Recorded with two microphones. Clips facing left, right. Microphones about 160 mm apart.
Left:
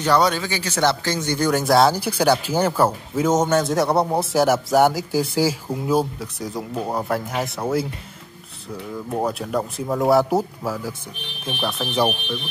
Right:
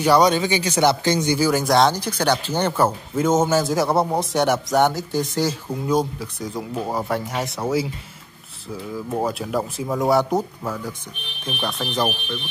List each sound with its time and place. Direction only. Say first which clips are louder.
0.0 s speech: right 3 dB; 15° right (ahead or behind)
1.5 s a man's voice: left 3 dB; centre (ahead or behind)
8.9 s a man's voice: even; centre (ahead or behind)